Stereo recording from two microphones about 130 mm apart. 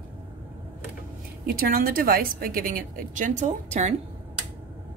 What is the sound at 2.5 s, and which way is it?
A woman's voice, 90° right.